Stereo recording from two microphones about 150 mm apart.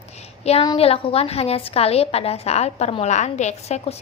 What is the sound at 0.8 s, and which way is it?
A woman's voice, 40° left (ahead or behind).